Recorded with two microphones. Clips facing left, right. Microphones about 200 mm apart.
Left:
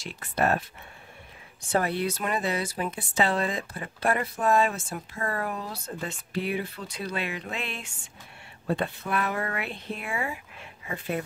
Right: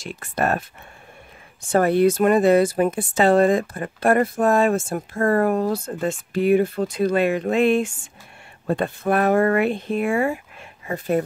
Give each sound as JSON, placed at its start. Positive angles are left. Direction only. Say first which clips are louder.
{"t": 0.0, "sound": "speech", "louder": "right 3 dB", "side_deg": -50}